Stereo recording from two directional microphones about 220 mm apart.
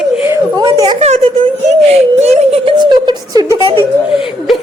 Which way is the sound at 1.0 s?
30° right (ahead or behind).